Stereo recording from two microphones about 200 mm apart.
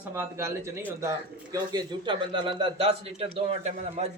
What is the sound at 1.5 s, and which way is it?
A man's voice, 20° right (ahead or behind).